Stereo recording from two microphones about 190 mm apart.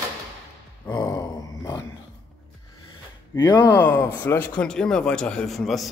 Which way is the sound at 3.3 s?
20° left (ahead or behind).